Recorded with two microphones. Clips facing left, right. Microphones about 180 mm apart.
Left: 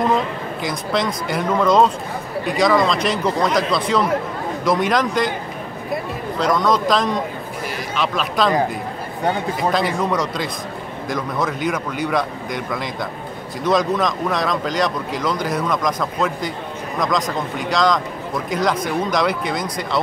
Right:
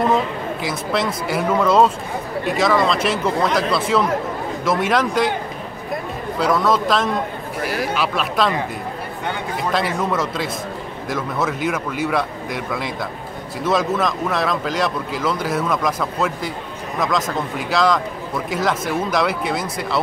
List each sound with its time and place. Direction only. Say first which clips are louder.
0.0 s speech: right 1 dB; 5° right (ahead or behind)
6.3 s speech: even; 5° right (ahead or behind)
9.2 s a man's voice: left 5 dB; 40° left (ahead or behind)
9.7 s speech: left 1 dB; centre (ahead or behind)